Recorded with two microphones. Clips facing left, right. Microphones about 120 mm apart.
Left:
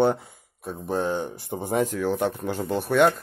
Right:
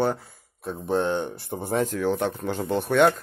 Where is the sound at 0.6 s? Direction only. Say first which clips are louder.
Right 2 dB; 5° left (ahead or behind).